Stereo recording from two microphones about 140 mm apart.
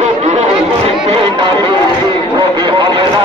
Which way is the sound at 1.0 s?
35° right (ahead or behind).